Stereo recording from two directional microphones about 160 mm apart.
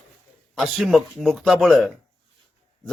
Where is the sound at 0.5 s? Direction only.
Centre (ahead or behind).